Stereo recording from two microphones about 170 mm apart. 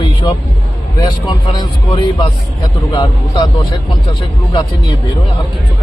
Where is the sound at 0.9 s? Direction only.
25° left (ahead or behind).